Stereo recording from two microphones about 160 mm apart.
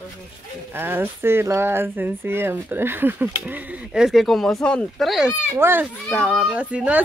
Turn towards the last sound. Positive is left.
turn(degrees=-10)  # may be behind; listen again after turning